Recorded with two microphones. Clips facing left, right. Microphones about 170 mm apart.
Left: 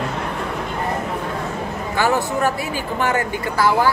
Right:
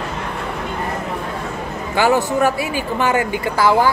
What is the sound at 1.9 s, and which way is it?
A man's voice, 15° right (ahead or behind).